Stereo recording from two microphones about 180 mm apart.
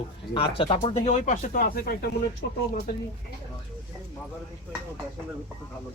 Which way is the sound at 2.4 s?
75° left (ahead or behind).